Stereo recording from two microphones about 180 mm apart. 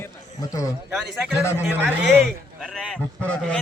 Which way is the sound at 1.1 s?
5° right (ahead or behind).